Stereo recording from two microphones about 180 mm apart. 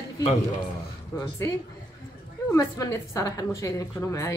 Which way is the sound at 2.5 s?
15° left (ahead or behind).